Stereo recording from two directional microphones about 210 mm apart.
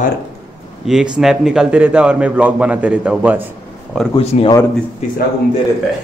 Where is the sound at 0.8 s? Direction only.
Centre (ahead or behind).